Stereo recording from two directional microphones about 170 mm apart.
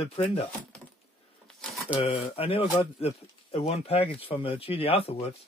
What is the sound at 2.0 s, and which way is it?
Speech, 30° left (ahead or behind).